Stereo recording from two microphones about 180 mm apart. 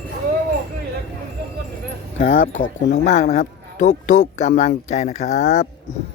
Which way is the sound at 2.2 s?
45° left (ahead or behind).